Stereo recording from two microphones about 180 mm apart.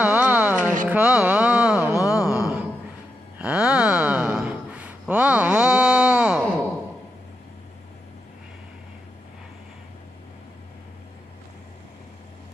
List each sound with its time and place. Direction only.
0.0 s music: 10° right (ahead or behind)
0.6 s music: 45° right (ahead or behind)
0.8 s music: 5° right (ahead or behind)
2.2 s a sound: 5° right (ahead or behind)